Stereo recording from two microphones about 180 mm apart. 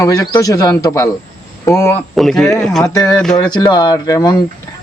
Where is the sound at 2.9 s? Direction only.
20° left (ahead or behind).